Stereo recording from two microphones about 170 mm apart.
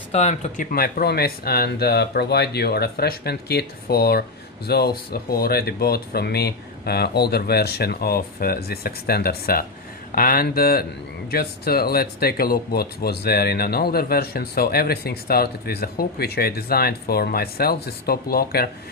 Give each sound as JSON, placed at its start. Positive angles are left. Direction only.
{"t": 0.1, "sound": "speech", "side_deg": 40}